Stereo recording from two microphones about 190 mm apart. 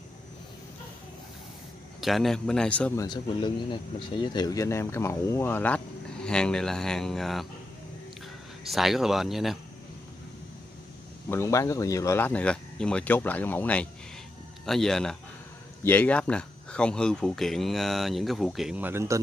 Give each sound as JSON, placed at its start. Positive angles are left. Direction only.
{"t": 2.0, "sound": "speech", "side_deg": 0}
{"t": 3.0, "sound": "speech", "side_deg": 20}
{"t": 8.6, "sound": "speech", "side_deg": 0}
{"t": 11.2, "sound": "speech", "side_deg": 15}